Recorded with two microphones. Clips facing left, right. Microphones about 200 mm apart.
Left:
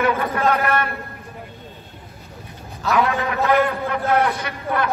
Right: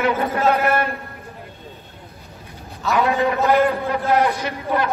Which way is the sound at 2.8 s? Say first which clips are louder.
Right 2 dB; centre (ahead or behind).